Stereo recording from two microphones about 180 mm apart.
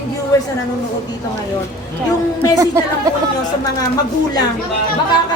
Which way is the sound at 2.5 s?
15° right (ahead or behind).